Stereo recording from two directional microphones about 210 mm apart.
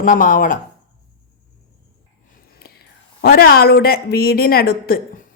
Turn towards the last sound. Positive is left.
turn(degrees=45)  # may be behind; listen again after turning